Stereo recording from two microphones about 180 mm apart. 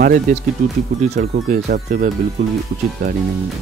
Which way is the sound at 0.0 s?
50° right (ahead or behind).